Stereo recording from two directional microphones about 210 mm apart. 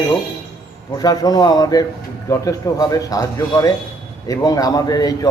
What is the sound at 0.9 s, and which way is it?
A man's voice, 20° left (ahead or behind).